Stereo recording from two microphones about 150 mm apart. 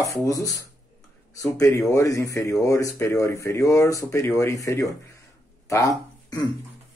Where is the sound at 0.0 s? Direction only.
20° left (ahead or behind).